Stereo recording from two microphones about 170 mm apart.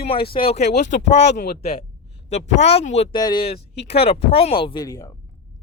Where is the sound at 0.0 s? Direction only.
35° left (ahead or behind).